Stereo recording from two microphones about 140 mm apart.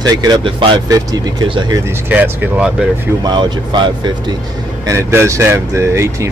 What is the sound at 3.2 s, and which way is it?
Speech, 30° right (ahead or behind).